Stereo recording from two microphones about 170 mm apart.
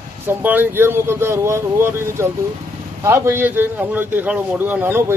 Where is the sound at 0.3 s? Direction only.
10° right (ahead or behind).